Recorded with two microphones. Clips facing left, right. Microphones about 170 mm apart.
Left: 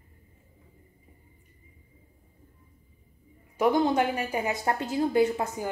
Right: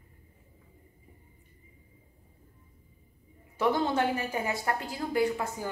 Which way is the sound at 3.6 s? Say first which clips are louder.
Left 4 dB; 15° left (ahead or behind).